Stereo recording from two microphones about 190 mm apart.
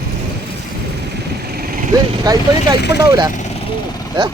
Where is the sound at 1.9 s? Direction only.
20° right (ahead or behind).